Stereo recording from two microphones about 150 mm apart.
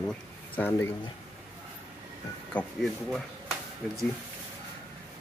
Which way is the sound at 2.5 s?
Centre (ahead or behind).